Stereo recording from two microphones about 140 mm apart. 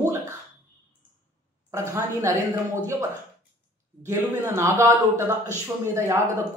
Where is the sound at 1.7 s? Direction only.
15° right (ahead or behind).